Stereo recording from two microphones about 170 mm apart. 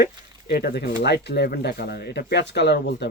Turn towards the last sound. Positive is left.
turn(degrees=80)